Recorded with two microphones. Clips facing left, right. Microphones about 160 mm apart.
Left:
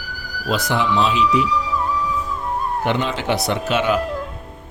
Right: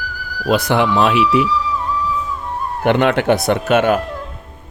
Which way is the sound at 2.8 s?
60° right (ahead or behind).